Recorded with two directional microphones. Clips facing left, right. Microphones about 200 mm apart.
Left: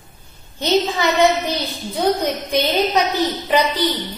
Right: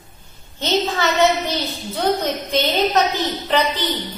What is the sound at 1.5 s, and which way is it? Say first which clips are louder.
A woman's voice: left 1 dB; 15° left (ahead or behind).